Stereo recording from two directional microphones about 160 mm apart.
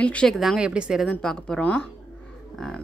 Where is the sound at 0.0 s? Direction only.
5° left (ahead or behind).